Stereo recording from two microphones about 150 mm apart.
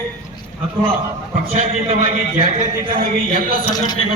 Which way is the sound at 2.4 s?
40° right (ahead or behind).